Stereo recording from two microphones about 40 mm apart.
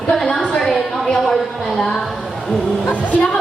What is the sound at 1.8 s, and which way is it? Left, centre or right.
Speech, centre.